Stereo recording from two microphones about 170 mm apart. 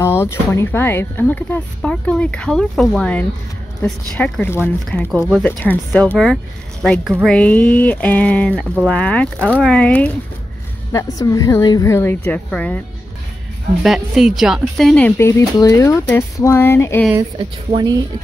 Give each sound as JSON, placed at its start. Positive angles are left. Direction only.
{"t": 0.0, "sound": "speech", "side_deg": 15}
{"t": 10.9, "sound": "a woman's voice", "side_deg": 20}
{"t": 13.8, "sound": "speech", "side_deg": 0}
{"t": 17.1, "sound": "speech", "side_deg": -25}